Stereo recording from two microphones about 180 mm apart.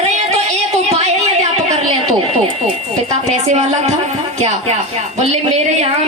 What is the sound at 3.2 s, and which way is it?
Speech, 40° right (ahead or behind).